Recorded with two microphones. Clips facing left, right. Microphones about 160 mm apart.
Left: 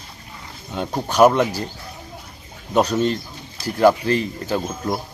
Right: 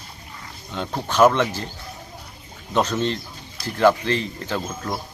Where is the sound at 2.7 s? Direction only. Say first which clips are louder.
Left 3 dB; 10° left (ahead or behind).